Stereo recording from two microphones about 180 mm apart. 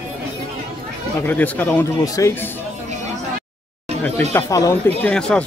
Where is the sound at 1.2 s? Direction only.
10° left (ahead or behind).